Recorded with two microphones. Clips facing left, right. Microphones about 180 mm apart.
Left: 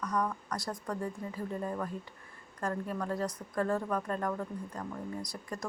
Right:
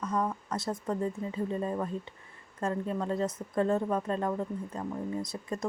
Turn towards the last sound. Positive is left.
turn(degrees=-20)  # may be behind; listen again after turning